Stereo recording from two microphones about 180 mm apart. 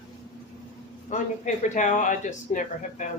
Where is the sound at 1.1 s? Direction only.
45° left (ahead or behind).